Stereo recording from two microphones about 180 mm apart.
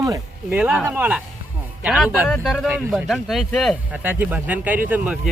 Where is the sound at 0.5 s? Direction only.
5° right (ahead or behind).